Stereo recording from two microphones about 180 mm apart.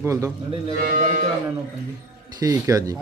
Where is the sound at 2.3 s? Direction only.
20° right (ahead or behind).